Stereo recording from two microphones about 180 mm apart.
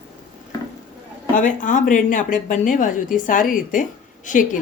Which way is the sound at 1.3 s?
45° left (ahead or behind).